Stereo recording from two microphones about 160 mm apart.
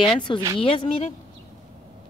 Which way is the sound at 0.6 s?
35° left (ahead or behind).